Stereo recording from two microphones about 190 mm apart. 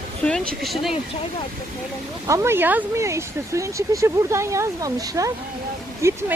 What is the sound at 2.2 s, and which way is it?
Speech, 15° right (ahead or behind).